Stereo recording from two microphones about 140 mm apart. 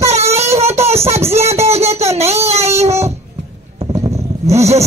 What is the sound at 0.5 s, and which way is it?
A man's voice, 50° right (ahead or behind).